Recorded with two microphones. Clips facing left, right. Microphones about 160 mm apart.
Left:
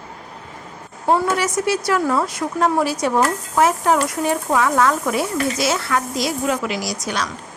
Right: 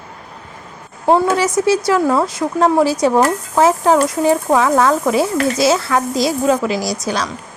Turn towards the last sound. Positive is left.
turn(degrees=-35)  # may be behind; listen again after turning